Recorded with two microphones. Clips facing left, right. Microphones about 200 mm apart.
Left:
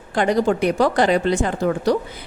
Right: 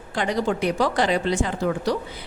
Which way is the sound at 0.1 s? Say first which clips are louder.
Left 5 dB; 50° left (ahead or behind).